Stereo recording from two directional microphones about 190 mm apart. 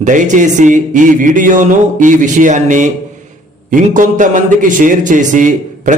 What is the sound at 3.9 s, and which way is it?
A man's voice, 40° right (ahead or behind).